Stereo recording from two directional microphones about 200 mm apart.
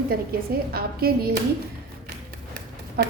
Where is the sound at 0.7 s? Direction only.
50° right (ahead or behind).